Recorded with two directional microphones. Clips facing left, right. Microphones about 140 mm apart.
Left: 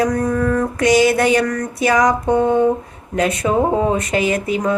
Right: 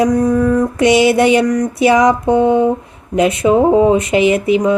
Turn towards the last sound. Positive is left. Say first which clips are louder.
# right 6 dB
turn(degrees=-20)  # may be behind; listen again after turning